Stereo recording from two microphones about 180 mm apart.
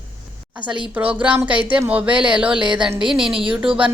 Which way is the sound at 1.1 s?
5° right (ahead or behind).